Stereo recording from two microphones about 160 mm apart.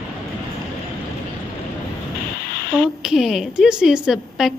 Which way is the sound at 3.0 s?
5° right (ahead or behind).